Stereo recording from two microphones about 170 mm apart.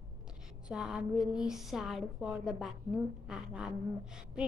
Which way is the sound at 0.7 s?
5° right (ahead or behind).